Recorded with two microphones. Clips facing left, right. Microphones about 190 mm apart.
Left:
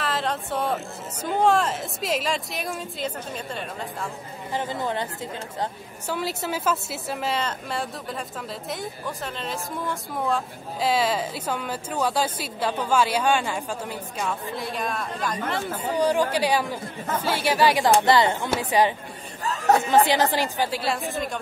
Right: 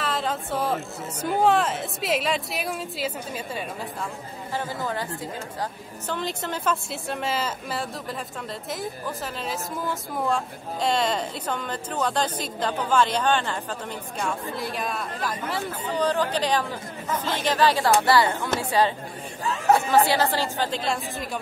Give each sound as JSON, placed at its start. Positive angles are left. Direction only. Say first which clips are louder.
{"t": 0.0, "sound": "a sound", "louder": "even", "side_deg": 0}
{"t": 1.2, "sound": "speech", "louder": "even", "side_deg": 0}
{"t": 4.6, "sound": "speech", "louder": "left 2 dB", "side_deg": 20}
{"t": 6.0, "sound": "speech", "louder": "left 2 dB", "side_deg": 10}
{"t": 15.8, "sound": "a woman's voice", "louder": "left 2 dB", "side_deg": 10}
{"t": 19.4, "sound": "chatter", "louder": "even", "side_deg": 40}
{"t": 19.7, "sound": "a woman's voice", "louder": "left 1 dB", "side_deg": 20}